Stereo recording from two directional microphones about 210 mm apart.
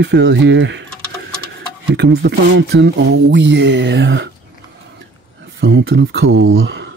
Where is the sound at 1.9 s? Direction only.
50° right (ahead or behind).